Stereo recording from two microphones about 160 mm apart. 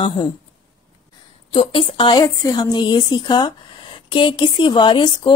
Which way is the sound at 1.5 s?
35° left (ahead or behind).